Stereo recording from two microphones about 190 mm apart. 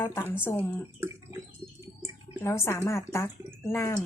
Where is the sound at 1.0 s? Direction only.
15° right (ahead or behind).